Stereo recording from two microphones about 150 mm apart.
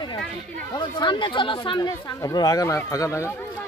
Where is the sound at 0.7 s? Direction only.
30° left (ahead or behind).